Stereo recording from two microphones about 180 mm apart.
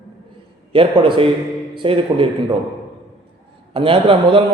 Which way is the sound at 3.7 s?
30° right (ahead or behind).